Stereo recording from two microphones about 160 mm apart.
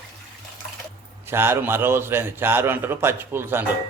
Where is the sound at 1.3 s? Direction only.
15° right (ahead or behind).